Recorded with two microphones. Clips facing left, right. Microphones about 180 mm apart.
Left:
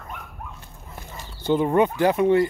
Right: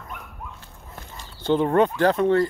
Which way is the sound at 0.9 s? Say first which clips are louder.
Left 2 dB; 10° left (ahead or behind).